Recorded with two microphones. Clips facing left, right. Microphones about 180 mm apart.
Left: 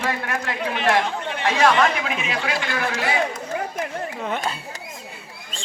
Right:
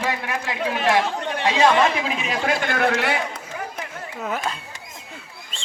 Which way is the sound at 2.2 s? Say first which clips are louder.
Right 3 dB; 40° right (ahead or behind).